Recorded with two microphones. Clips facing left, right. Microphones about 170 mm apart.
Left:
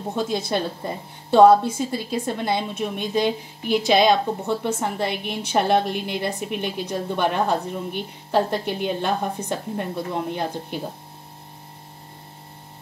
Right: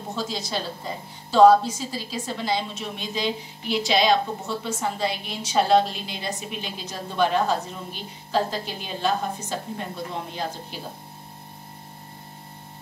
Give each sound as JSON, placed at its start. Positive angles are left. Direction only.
{"t": 0.1, "sound": "a woman's voice", "side_deg": 55}